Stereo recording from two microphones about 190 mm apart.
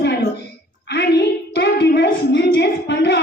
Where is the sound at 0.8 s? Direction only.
60° left (ahead or behind).